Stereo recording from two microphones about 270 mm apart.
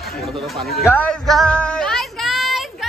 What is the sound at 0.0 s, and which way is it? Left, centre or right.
Chatter, centre.